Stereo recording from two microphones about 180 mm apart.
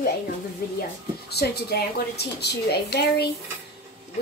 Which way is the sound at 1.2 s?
60° left (ahead or behind).